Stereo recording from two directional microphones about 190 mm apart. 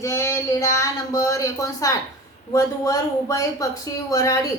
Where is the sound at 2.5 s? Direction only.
15° left (ahead or behind).